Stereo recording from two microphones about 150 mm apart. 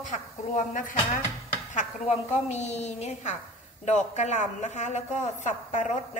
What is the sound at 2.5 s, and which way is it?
A woman's voice, 50° left (ahead or behind).